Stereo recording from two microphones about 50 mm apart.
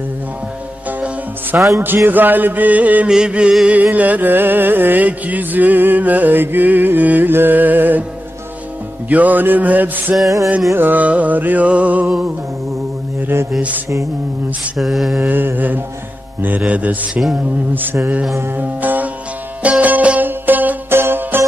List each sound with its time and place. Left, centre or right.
1.5 s music: right
3.1 s music: centre
3.7 s music: right
9.1 s music: right
11.1 s music: right
14.8 s mantra: centre
15.2 s music: right
18.6 s music: right
20.9 s music: right